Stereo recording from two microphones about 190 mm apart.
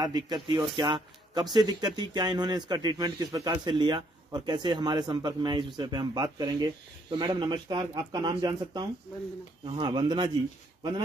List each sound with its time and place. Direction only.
0.0 s a man's voice: 25° right (ahead or behind)